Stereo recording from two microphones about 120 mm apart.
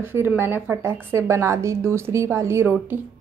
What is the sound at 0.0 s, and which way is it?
A woman's voice, 20° right (ahead or behind).